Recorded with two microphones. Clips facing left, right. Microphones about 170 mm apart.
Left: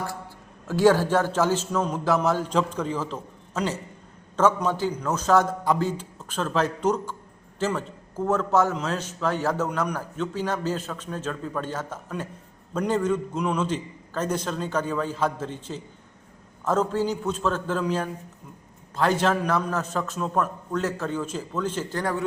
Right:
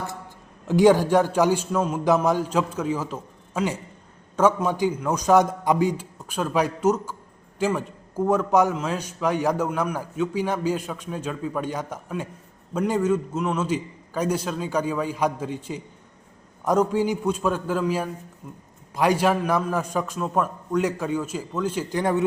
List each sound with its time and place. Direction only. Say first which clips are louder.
0.7 s a man's voice: right 3 dB; 15° right (ahead or behind)